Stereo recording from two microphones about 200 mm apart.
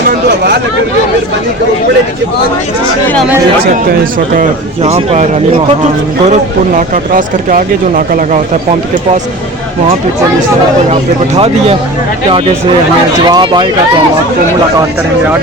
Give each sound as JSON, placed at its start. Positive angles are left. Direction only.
{"t": 0.1, "sound": "speech", "side_deg": -50}
{"t": 4.8, "sound": "speech", "side_deg": -30}
{"t": 6.7, "sound": "speech", "side_deg": -40}
{"t": 11.3, "sound": "speech", "side_deg": -30}
{"t": 13.2, "sound": "speech", "side_deg": -20}